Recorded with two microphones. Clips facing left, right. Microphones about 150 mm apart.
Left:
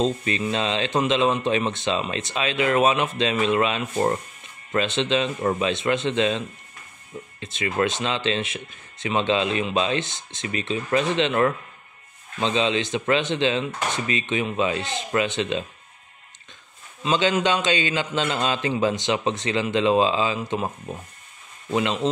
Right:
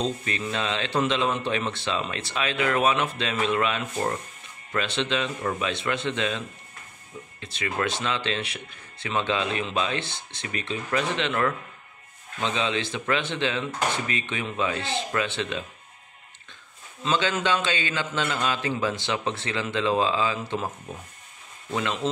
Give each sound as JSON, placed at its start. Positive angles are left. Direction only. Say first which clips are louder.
{"t": 0.0, "sound": "speech", "louder": "left 5 dB", "side_deg": 20}
{"t": 5.4, "sound": "a man's voice", "louder": "left 5 dB", "side_deg": 35}
{"t": 5.7, "sound": "speech", "louder": "left 5 dB", "side_deg": 20}
{"t": 12.5, "sound": "speech", "louder": "left 6 dB", "side_deg": 20}
{"t": 17.0, "sound": "speech", "louder": "left 4 dB", "side_deg": 15}